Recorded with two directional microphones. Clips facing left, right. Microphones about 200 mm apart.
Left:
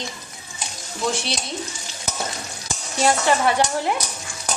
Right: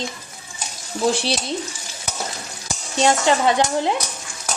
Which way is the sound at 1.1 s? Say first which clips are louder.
Right 5 dB; 30° right (ahead or behind).